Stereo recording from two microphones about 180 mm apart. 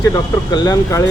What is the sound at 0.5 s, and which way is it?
Speech, 20° left (ahead or behind).